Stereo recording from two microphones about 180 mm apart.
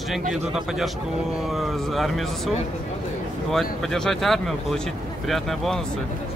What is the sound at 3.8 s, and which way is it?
Speech, centre (ahead or behind).